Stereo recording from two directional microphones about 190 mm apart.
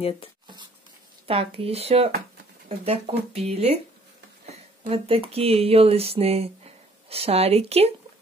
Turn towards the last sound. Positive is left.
turn(degrees=-30)  # may be behind; listen again after turning